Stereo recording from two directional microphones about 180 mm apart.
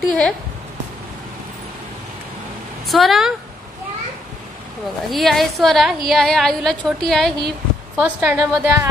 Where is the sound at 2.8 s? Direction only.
Centre (ahead or behind).